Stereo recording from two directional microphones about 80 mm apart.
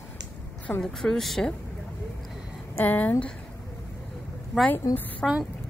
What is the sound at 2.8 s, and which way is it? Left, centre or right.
Speech, centre.